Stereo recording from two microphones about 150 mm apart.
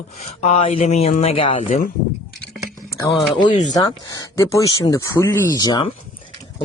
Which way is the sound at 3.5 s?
55° left (ahead or behind).